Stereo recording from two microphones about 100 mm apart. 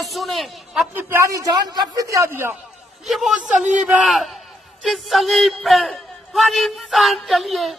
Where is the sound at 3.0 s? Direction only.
Centre (ahead or behind).